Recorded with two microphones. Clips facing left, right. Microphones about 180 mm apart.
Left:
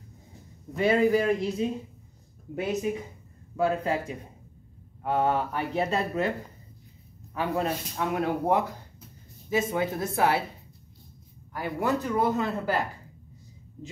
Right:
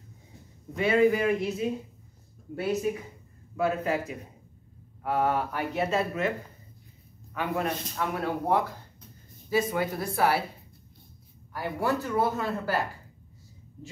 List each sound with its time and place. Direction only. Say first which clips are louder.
0.7 s a man's voice: even; 35° left (ahead or behind)
2.5 s speech: even; 20° left (ahead or behind)
3.5 s a man's voice: left 1 dB; 30° left (ahead or behind)
7.3 s speech: left 2 dB; 30° left (ahead or behind)
8.0 s speech: left 3 dB; 20° left (ahead or behind)
11.5 s speech: left 1 dB; 15° left (ahead or behind)